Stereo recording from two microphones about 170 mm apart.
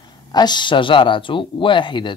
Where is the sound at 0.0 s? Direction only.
25° left (ahead or behind).